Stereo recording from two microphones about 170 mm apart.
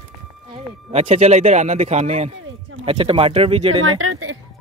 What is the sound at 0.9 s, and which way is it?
Speech, 40° right (ahead or behind).